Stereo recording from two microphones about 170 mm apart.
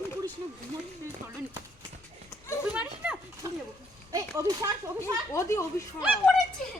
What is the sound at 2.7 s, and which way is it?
Speech, 10° right (ahead or behind).